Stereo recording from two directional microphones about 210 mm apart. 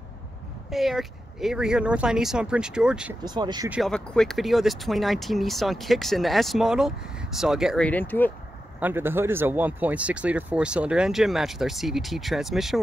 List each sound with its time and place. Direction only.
0.7 s speech: centre (ahead or behind)
3.3 s speech: 20° right (ahead or behind)
3.7 s speech: centre (ahead or behind)
8.7 s speech: 10° right (ahead or behind)